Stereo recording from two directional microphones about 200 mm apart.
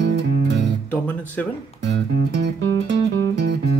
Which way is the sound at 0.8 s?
10° left (ahead or behind).